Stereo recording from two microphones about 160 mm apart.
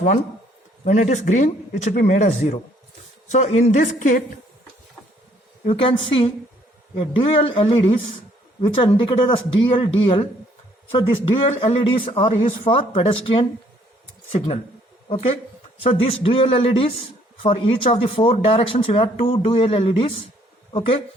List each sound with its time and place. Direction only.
0.9 s a woman's voice: 50° left (ahead or behind)
5.6 s speech: 35° left (ahead or behind)